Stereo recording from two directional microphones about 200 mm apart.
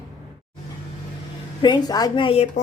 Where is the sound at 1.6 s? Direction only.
20° left (ahead or behind).